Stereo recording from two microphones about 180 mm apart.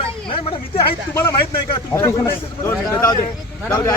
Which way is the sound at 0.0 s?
30° left (ahead or behind).